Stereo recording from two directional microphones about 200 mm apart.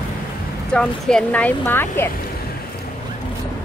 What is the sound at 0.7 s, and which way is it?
Speech, 5° left (ahead or behind).